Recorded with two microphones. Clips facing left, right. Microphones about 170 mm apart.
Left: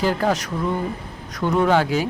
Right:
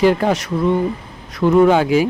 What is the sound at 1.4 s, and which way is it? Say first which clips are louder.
Speech: right 6 dB; 5° right (ahead or behind).